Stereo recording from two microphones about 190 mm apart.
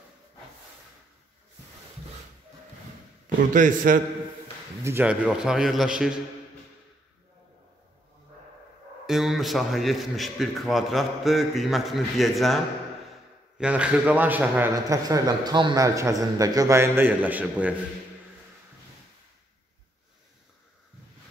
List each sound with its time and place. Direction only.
3.3 s a man's voice: 45° right (ahead or behind)
4.8 s a man's voice: 10° right (ahead or behind)
9.0 s a man's voice: centre (ahead or behind)
13.6 s a man's voice: 5° right (ahead or behind)